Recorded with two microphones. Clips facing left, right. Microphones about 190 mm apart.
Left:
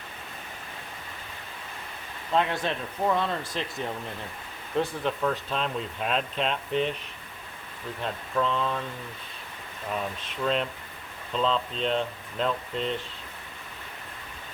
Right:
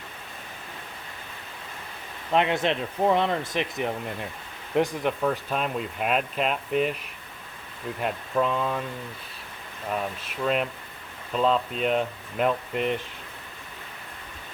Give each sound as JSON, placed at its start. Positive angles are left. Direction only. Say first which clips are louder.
{"t": 2.3, "sound": "speech", "louder": "right 3 dB", "side_deg": -20}
{"t": 8.0, "sound": "speech", "louder": "right 3 dB", "side_deg": -10}
{"t": 10.2, "sound": "speech", "louder": "right 1 dB", "side_deg": -5}